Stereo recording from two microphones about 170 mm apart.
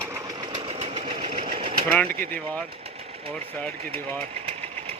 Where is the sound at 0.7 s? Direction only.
40° right (ahead or behind).